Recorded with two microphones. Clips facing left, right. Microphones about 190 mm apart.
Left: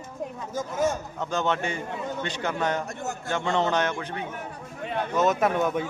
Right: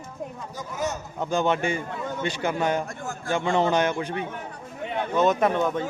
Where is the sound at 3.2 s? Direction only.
10° right (ahead or behind).